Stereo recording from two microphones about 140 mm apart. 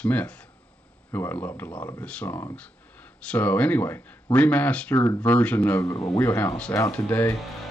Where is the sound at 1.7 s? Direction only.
30° left (ahead or behind).